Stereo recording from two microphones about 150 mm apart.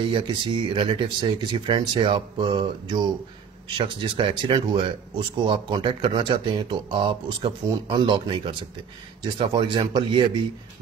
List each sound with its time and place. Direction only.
0.0 s speech: 35° right (ahead or behind)